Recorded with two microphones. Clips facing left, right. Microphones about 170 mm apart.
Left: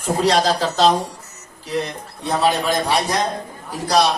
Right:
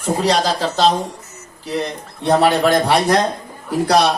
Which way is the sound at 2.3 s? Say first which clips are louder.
Right 5 dB; 65° right (ahead or behind).